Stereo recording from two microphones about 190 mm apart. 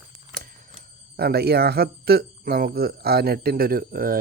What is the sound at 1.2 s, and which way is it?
Speech, 55° right (ahead or behind).